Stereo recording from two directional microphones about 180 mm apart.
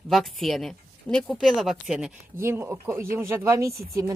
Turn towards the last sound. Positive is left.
turn(degrees=-15)  # may be behind; listen again after turning